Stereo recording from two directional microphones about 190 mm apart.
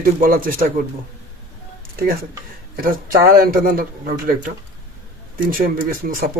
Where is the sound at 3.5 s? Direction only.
50° right (ahead or behind).